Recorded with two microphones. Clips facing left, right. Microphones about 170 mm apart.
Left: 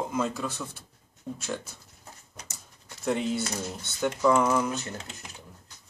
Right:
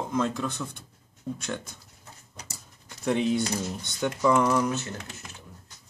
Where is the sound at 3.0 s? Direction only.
Centre (ahead or behind).